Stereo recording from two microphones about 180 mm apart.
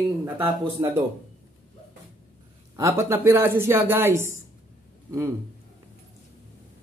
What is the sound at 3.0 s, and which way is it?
A man's voice, 15° right (ahead or behind).